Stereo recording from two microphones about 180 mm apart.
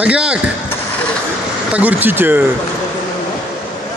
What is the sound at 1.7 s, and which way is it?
Speech, 10° right (ahead or behind).